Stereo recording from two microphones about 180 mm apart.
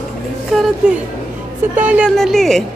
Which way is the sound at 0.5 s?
Centre (ahead or behind).